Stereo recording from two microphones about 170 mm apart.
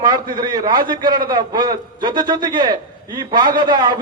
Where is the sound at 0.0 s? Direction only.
25° right (ahead or behind).